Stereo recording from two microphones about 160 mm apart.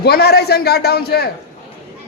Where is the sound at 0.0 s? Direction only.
80° left.